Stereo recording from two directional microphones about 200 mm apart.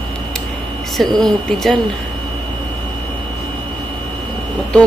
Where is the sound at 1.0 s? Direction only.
Centre (ahead or behind).